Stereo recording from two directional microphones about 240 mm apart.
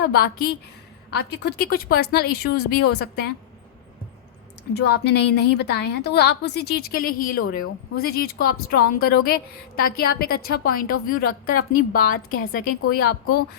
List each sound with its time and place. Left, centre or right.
0.0 s a woman's voice: left
4.7 s a woman's voice: left